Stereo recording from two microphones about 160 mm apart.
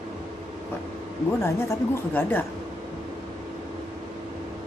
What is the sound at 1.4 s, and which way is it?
Speech, 15° left (ahead or behind).